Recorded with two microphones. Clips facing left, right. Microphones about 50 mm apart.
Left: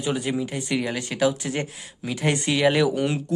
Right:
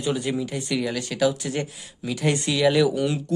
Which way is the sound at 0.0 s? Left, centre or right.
Left.